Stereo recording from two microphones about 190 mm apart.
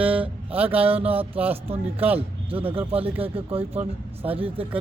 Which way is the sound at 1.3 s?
10° right (ahead or behind).